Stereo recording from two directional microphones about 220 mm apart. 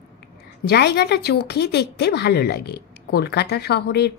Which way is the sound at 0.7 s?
50° left (ahead or behind).